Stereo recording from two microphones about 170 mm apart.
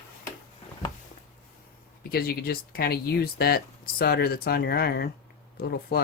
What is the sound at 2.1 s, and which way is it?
Speech, 65° left (ahead or behind).